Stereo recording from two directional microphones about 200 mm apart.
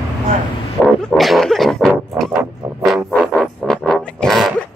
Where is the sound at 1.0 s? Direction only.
Centre (ahead or behind).